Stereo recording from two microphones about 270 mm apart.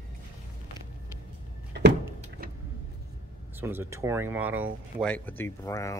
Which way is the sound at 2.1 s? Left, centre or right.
Right.